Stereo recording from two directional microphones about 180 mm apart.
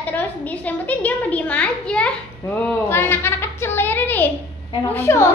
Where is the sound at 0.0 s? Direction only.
10° left (ahead or behind).